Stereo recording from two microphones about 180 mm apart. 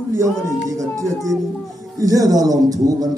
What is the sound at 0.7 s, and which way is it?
A man's voice, 20° right (ahead or behind).